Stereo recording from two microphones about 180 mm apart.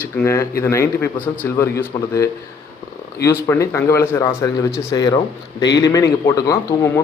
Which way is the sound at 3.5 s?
15° left (ahead or behind).